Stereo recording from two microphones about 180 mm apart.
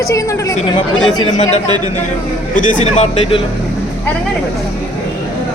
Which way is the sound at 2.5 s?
40° left (ahead or behind).